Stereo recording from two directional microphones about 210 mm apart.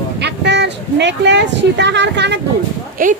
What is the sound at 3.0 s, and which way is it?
Speech, 40° right (ahead or behind).